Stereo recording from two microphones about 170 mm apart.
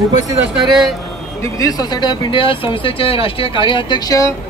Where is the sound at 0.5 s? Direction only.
Centre (ahead or behind).